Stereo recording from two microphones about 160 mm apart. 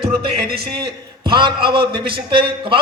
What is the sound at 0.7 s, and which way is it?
A man's voice, 30° right (ahead or behind).